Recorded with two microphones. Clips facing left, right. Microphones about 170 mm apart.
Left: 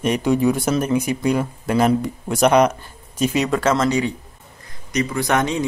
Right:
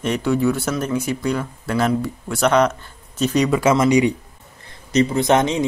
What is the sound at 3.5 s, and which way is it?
Speech, 10° right (ahead or behind).